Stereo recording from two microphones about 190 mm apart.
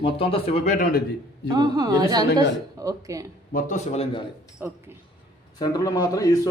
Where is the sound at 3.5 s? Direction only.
40° left (ahead or behind).